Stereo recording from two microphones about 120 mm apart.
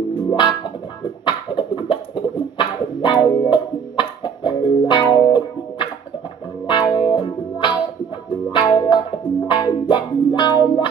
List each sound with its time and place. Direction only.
0.3 s music: 40° left (ahead or behind)
1.2 s a sound: 40° left (ahead or behind)
6.7 s music: 40° left (ahead or behind)